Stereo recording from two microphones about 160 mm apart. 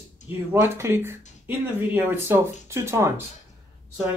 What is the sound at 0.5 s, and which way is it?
Speech, 15° right (ahead or behind).